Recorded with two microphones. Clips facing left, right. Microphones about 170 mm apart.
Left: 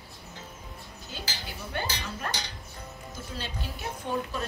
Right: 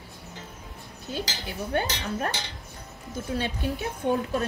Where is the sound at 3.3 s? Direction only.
55° right (ahead or behind).